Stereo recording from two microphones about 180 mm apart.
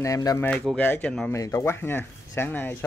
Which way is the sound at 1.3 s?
15° left (ahead or behind).